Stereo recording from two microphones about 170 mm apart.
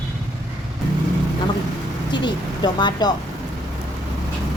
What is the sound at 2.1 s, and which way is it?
Speech, 25° left (ahead or behind).